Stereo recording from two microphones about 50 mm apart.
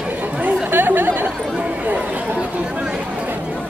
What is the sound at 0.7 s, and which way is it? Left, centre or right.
Chatter, right.